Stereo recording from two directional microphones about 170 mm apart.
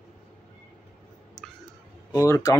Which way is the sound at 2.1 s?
15° left (ahead or behind).